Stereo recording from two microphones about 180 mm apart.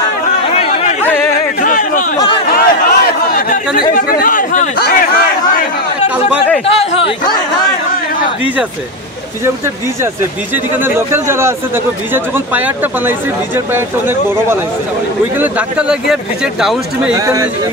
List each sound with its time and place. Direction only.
0.6 s chatter: 35° left (ahead or behind)
1.0 s a sound: 10° left (ahead or behind)
1.6 s a sound: 50° left (ahead or behind)
3.9 s chatter: 50° left (ahead or behind)
11.0 s speech: 15° right (ahead or behind)
15.4 s speech: 5° right (ahead or behind)